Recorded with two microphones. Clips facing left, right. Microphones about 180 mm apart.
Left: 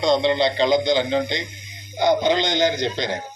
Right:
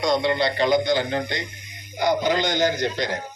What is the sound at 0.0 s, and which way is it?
A man's voice, 25° left (ahead or behind).